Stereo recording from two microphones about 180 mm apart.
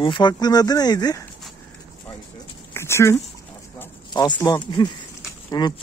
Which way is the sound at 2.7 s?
15° left (ahead or behind).